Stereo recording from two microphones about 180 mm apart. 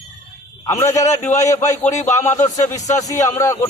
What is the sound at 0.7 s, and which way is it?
A man's voice, 15° left (ahead or behind).